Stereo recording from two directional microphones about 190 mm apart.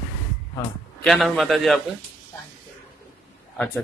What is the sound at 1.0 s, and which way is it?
Speech, centre (ahead or behind).